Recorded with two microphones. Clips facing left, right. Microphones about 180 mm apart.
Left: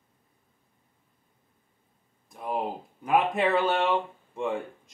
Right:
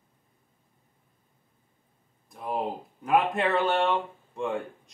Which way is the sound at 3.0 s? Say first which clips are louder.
Even; centre (ahead or behind).